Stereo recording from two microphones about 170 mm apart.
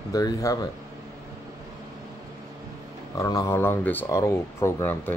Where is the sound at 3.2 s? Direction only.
20° left (ahead or behind).